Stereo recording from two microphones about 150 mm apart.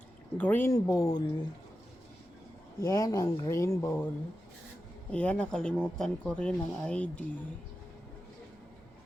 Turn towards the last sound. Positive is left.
turn(degrees=5)  # may be behind; listen again after turning